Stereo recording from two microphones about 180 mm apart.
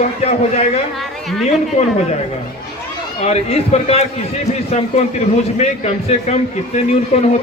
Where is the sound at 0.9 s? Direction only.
Centre (ahead or behind).